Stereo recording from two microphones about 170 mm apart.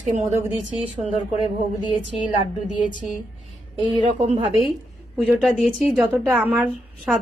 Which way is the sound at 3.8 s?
30° right (ahead or behind).